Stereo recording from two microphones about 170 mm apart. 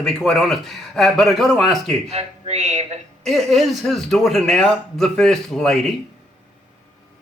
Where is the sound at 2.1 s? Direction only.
40° right (ahead or behind).